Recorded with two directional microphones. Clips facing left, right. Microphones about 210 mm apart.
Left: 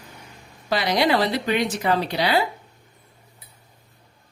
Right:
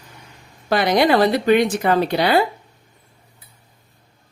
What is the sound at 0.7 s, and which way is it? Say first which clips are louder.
Speech: right 5 dB; 55° right (ahead or behind).